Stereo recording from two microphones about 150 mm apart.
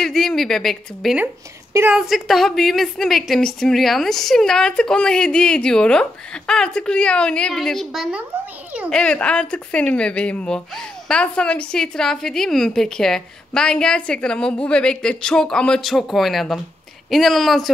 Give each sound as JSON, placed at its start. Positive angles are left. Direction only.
{"t": 0.0, "sound": "a woman's voice", "side_deg": 5}
{"t": 1.2, "sound": "speech", "side_deg": -15}
{"t": 2.0, "sound": "a woman's voice", "side_deg": 0}
{"t": 8.9, "sound": "a woman's voice", "side_deg": 5}